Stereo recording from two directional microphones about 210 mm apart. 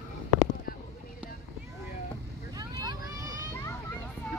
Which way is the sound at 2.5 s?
20° right (ahead or behind).